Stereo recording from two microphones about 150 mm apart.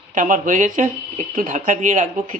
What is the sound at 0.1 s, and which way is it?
Speech, 60° right (ahead or behind).